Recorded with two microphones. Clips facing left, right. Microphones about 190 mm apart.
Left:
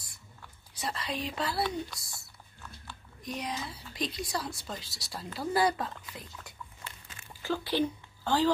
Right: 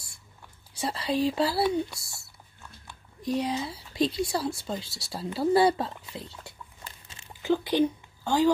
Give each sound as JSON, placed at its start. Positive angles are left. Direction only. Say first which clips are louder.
{"t": 0.7, "sound": "speech", "louder": "right 8 dB", "side_deg": -30}
{"t": 3.2, "sound": "speech", "louder": "right 9 dB", "side_deg": -30}
{"t": 6.0, "sound": "dog", "louder": "right 5 dB", "side_deg": -30}